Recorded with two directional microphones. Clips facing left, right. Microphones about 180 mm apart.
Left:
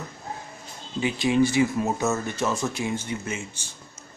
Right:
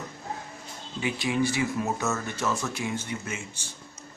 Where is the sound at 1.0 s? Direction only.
25° left (ahead or behind).